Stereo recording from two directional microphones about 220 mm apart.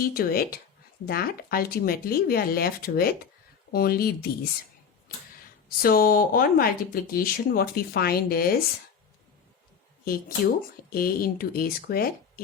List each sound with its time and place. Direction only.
0.0 s speech: 40° left (ahead or behind)
5.8 s speech: 40° left (ahead or behind)
10.0 s speech: 45° left (ahead or behind)